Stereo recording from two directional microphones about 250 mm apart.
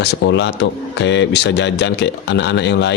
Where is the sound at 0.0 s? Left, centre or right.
Left.